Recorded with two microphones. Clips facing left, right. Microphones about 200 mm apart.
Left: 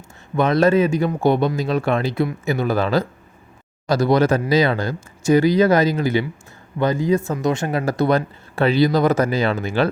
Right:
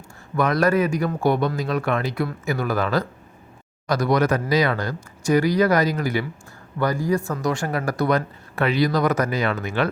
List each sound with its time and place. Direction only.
0.3 s speech: 25° left (ahead or behind)